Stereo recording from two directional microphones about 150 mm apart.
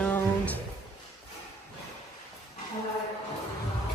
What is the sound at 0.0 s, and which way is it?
Music, 10° left (ahead or behind).